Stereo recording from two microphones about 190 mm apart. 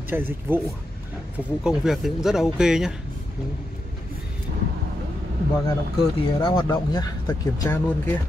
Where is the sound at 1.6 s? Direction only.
Centre (ahead or behind).